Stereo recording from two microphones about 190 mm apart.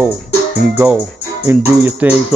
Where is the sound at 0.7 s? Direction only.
10° right (ahead or behind).